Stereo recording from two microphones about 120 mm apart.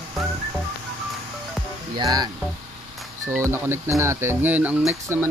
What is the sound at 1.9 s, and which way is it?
Speech, 35° right (ahead or behind).